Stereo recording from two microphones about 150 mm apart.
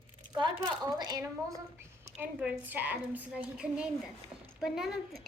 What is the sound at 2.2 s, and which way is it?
A woman's voice, 15° right (ahead or behind).